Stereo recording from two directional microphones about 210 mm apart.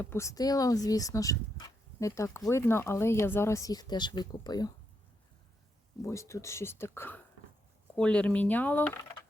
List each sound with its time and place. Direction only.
0.0 s speech: 10° left (ahead or behind)
6.0 s speech: 15° left (ahead or behind)